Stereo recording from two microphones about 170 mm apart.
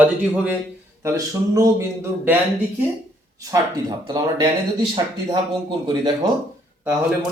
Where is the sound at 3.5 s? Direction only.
25° right (ahead or behind).